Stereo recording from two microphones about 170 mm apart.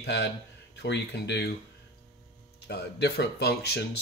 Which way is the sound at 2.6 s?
75° left (ahead or behind).